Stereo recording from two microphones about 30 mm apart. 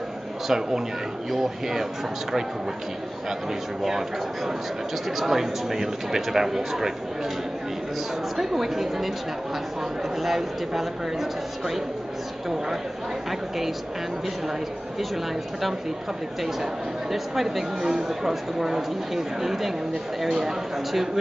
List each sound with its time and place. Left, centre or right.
0.5 s speech: centre
5.0 s speech: centre
8.4 s speech: centre
10.1 s speech: centre
17.1 s speech: centre